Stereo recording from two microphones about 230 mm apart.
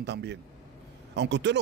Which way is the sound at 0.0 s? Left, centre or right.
Right.